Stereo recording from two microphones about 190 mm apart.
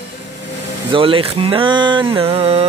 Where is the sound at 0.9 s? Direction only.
30° right (ahead or behind).